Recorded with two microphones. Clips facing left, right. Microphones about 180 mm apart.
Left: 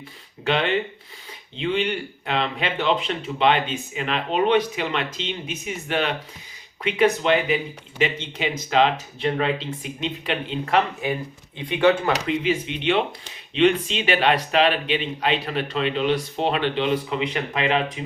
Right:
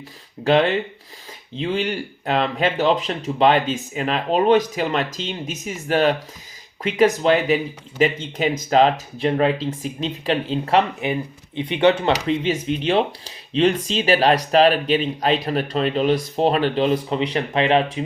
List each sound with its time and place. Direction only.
0.4 s speech: 40° right (ahead or behind)
11.0 s speech: 20° right (ahead or behind)
12.4 s speech: 40° right (ahead or behind)